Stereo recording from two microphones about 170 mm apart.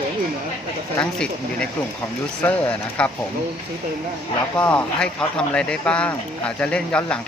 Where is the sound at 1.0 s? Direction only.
5° left (ahead or behind).